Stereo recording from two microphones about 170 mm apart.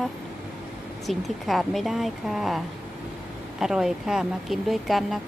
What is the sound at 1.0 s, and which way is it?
A woman's voice, centre (ahead or behind).